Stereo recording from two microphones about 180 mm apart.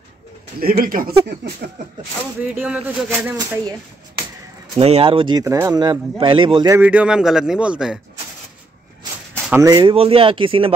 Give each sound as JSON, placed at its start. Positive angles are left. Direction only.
{"t": 0.6, "sound": "speech", "side_deg": -55}
{"t": 2.4, "sound": "speech", "side_deg": -5}
{"t": 3.3, "sound": "speech", "side_deg": -20}
{"t": 4.7, "sound": "speech", "side_deg": -35}
{"t": 6.8, "sound": "speech", "side_deg": -5}
{"t": 9.5, "sound": "speech", "side_deg": -20}